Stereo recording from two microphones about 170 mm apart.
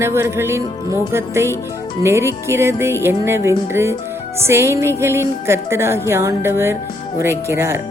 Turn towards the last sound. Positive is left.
turn(degrees=-15)  # may be behind; listen again after turning